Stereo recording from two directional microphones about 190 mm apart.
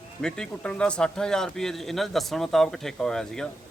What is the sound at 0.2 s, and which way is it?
Speech, 5° left (ahead or behind).